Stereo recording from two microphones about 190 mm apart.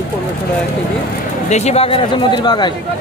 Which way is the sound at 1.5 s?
35° left (ahead or behind).